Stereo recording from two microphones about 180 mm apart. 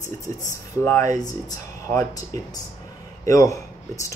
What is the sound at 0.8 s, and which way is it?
Speech, 15° left (ahead or behind).